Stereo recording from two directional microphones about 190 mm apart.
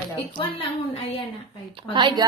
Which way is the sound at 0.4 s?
30° left (ahead or behind).